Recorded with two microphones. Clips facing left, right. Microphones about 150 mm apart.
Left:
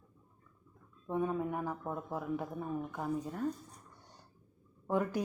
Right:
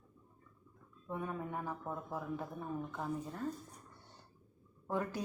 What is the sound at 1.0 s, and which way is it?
Speech, 20° left (ahead or behind).